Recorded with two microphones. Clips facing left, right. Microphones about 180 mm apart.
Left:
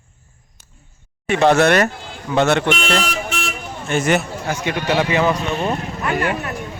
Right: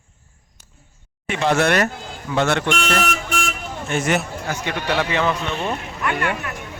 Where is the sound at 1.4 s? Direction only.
70° left (ahead or behind).